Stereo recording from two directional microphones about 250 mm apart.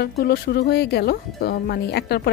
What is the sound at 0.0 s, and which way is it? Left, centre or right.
Speech, left.